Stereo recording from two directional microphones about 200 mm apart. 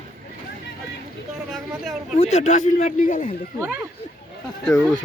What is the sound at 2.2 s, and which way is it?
A man's voice, 35° left (ahead or behind).